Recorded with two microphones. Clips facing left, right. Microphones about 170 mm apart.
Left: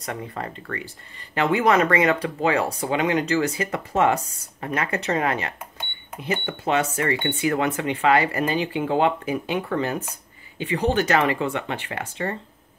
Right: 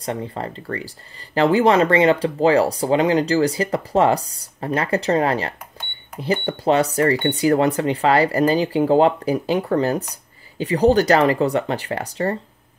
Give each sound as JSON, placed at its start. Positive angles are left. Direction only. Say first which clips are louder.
{"t": 0.0, "sound": "speech", "louder": "right 5 dB", "side_deg": -30}